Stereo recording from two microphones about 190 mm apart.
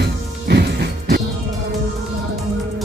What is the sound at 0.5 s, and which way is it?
Music, 60° right (ahead or behind).